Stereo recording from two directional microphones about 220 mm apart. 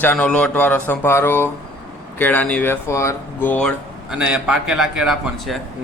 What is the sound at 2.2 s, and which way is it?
Speech, 10° left (ahead or behind).